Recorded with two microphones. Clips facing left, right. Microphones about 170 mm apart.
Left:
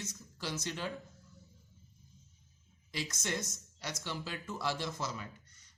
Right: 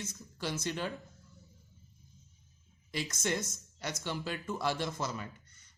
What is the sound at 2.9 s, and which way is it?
A man's voice, 55° right (ahead or behind).